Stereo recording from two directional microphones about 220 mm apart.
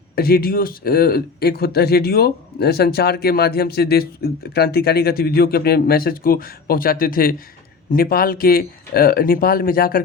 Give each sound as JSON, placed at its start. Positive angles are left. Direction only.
{"t": 0.2, "sound": "speech", "side_deg": 45}